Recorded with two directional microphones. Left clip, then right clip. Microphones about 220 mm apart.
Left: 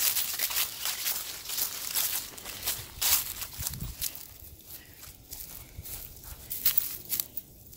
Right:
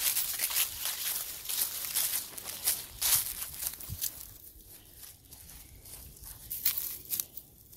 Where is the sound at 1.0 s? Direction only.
20° right (ahead or behind).